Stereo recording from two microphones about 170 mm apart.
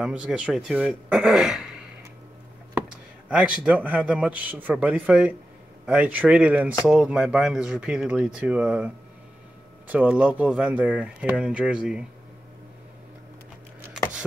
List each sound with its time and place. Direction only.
0.0 s speech: 5° right (ahead or behind)
3.3 s speech: 5° right (ahead or behind)